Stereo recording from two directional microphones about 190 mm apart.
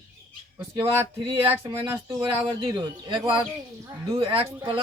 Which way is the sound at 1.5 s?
15° right (ahead or behind).